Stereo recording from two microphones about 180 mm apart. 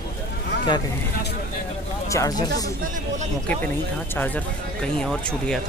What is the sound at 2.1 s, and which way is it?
Speech, 20° left (ahead or behind).